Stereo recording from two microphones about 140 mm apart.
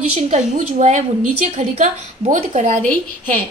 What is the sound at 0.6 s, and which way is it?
A woman's voice, 55° right (ahead or behind).